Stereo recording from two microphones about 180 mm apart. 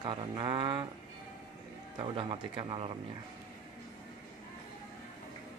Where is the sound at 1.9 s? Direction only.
30° right (ahead or behind).